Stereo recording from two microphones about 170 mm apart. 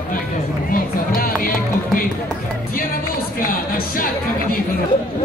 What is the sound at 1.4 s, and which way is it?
Music, 55° left (ahead or behind).